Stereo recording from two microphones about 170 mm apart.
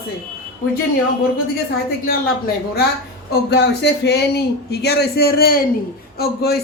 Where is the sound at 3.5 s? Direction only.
90° left.